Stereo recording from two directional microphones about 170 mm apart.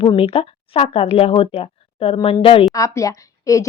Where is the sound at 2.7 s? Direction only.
20° left (ahead or behind).